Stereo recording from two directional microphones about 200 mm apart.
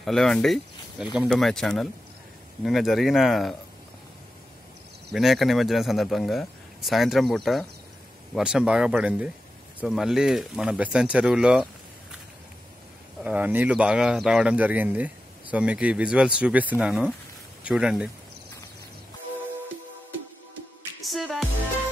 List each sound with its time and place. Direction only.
0.0 s speech: centre (ahead or behind)
5.1 s speech: centre (ahead or behind)
13.2 s speech: 5° right (ahead or behind)
21.0 s music: centre (ahead or behind)